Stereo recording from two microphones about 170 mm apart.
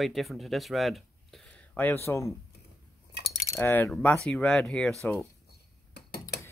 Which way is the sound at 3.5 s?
10° left (ahead or behind).